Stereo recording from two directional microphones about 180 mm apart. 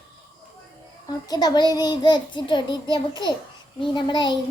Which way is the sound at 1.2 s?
20° left (ahead or behind).